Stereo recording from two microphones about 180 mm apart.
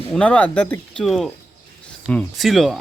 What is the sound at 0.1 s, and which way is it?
A man's voice, 5° left (ahead or behind).